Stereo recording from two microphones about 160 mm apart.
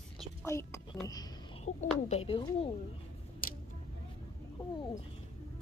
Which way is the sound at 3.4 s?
60° left (ahead or behind).